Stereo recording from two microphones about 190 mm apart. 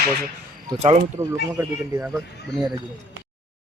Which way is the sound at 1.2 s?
15° right (ahead or behind).